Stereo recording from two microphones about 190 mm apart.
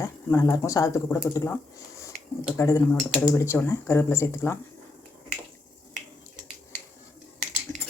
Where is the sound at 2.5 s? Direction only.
15° left (ahead or behind).